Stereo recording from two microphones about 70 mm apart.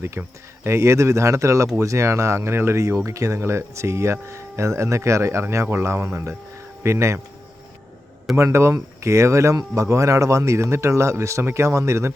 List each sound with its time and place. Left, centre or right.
0.2 s speech: right
8.4 s speech: right